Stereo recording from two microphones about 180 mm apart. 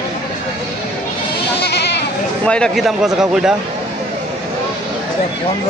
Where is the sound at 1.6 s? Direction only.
70° left (ahead or behind).